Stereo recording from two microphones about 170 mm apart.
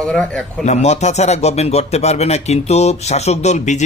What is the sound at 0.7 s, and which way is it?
A man's voice, 40° left (ahead or behind).